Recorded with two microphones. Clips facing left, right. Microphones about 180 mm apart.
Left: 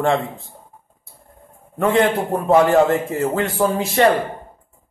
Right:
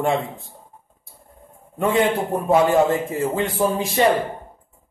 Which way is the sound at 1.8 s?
10° right (ahead or behind).